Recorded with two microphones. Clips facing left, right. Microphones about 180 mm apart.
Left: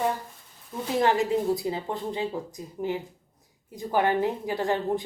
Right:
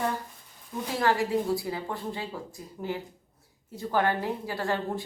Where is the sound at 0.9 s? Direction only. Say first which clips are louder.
Left 3 dB; 20° left (ahead or behind).